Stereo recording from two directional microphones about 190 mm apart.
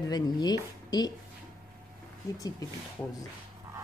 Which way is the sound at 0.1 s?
20° left (ahead or behind).